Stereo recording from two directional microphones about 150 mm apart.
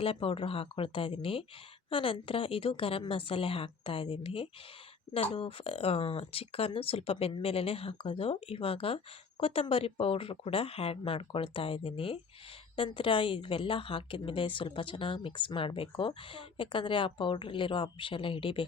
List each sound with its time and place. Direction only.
0.0 s a woman's voice: 40° left (ahead or behind)